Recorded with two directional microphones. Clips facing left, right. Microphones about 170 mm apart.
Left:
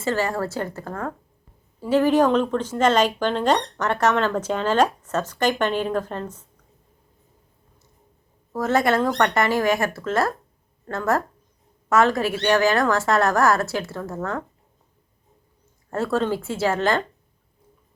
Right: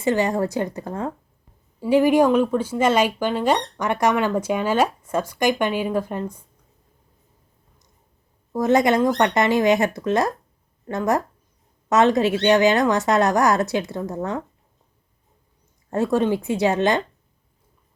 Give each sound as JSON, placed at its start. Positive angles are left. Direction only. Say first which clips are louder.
{"t": 0.0, "sound": "speech", "louder": "right 3 dB", "side_deg": -20}
{"t": 8.5, "sound": "a woman's voice", "louder": "right 3 dB", "side_deg": -15}
{"t": 15.9, "sound": "speech", "louder": "right 3 dB", "side_deg": -15}